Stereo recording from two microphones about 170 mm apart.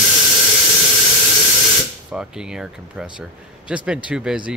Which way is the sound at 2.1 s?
5° right (ahead or behind).